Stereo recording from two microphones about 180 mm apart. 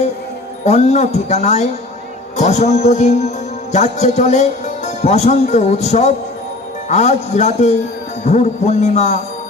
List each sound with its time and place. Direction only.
0.6 s speech: 40° left (ahead or behind)